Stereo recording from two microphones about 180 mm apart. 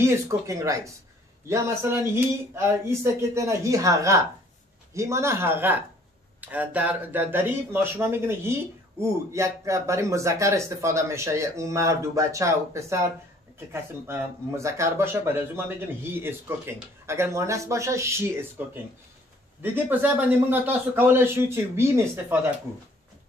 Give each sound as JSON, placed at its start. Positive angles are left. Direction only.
{"t": 0.0, "sound": "speech", "side_deg": -15}
{"t": 19.6, "sound": "speech", "side_deg": -10}